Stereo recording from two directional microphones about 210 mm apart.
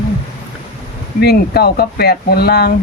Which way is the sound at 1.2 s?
50° left (ahead or behind).